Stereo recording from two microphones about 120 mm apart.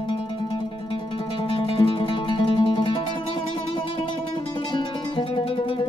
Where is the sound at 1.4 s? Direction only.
45° left (ahead or behind).